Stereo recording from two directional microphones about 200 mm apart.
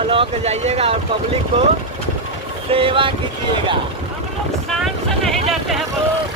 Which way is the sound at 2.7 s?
25° right (ahead or behind).